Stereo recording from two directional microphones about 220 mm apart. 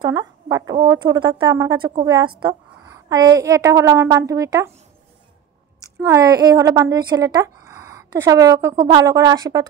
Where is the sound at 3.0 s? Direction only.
15° right (ahead or behind).